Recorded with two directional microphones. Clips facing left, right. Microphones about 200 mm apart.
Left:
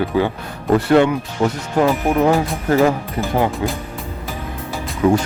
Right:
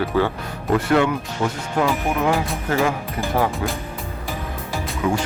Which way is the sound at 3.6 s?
20° left (ahead or behind).